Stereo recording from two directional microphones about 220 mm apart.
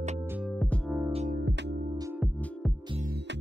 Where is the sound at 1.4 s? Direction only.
50° right (ahead or behind).